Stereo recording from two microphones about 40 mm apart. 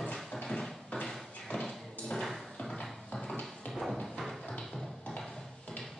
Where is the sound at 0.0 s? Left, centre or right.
Centre.